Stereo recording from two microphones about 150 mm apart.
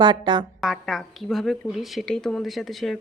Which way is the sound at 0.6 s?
Centre (ahead or behind).